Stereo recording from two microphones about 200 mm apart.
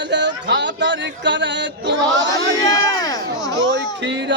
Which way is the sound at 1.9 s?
65° right (ahead or behind).